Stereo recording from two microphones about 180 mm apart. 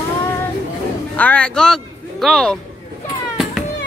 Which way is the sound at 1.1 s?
10° left (ahead or behind).